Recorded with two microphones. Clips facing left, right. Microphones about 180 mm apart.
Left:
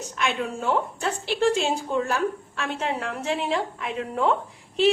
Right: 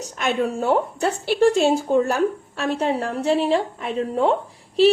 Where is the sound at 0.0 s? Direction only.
40° right (ahead or behind).